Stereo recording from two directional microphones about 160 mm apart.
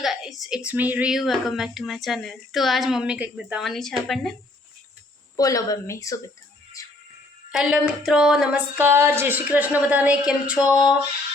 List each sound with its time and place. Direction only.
0.0 s speech: centre (ahead or behind)
5.4 s speech: 20° left (ahead or behind)
6.8 s music: 20° left (ahead or behind)
7.5 s a sound: 5° right (ahead or behind)